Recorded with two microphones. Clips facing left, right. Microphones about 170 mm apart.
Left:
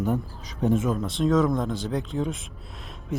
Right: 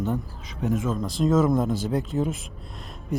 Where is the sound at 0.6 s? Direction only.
30° left (ahead or behind).